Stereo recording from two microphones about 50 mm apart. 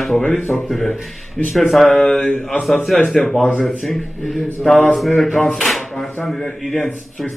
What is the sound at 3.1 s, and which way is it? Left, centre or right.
Speech, centre.